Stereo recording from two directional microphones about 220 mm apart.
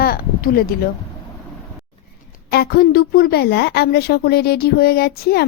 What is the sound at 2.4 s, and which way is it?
A woman's voice, 45° left (ahead or behind).